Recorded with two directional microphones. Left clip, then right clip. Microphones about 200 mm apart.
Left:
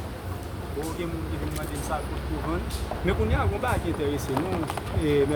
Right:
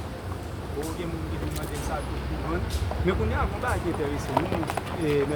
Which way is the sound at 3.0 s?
45° left (ahead or behind).